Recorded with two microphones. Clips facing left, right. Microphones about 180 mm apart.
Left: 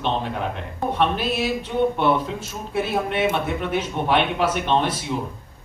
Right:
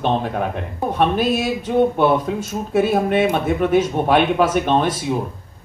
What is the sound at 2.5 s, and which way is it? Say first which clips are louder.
Speech: right 8 dB; 50° right (ahead or behind).